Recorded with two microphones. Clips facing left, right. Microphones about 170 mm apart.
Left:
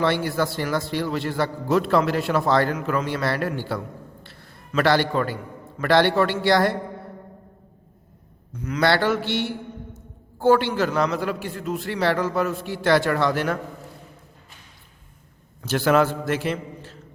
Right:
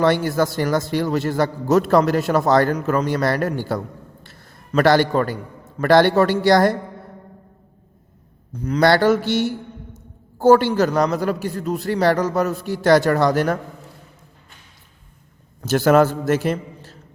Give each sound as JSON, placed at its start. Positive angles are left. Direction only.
{"t": 0.0, "sound": "a man's voice", "side_deg": -45}
{"t": 4.2, "sound": "a sound", "side_deg": -45}
{"t": 5.8, "sound": "a man's voice", "side_deg": -45}
{"t": 8.5, "sound": "a man's voice", "side_deg": -35}
{"t": 15.6, "sound": "a man's voice", "side_deg": -45}